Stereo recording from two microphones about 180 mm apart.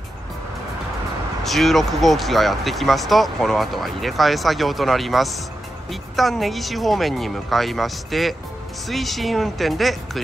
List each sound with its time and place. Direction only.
1.4 s speech: centre (ahead or behind)